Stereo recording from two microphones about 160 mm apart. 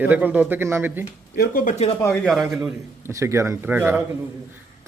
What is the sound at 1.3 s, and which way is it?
Speech, 70° left (ahead or behind).